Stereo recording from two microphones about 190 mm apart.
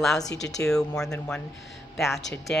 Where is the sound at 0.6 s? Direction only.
5° left (ahead or behind).